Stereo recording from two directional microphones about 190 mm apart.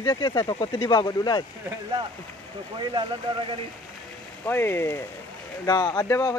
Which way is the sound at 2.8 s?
25° right (ahead or behind).